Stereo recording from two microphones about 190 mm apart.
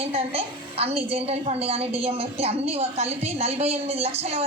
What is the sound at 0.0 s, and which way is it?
A woman's voice, 30° right (ahead or behind).